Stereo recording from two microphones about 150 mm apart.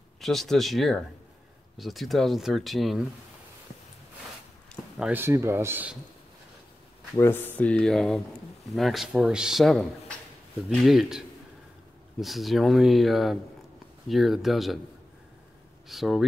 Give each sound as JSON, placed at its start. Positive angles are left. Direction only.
{"t": 0.2, "sound": "speech", "side_deg": 0}
{"t": 4.9, "sound": "speech", "side_deg": -10}
{"t": 7.2, "sound": "speech", "side_deg": 15}
{"t": 15.9, "sound": "speech", "side_deg": 0}